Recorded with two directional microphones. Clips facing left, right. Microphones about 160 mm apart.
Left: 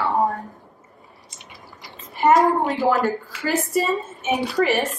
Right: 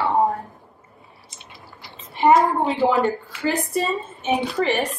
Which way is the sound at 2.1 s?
Centre (ahead or behind).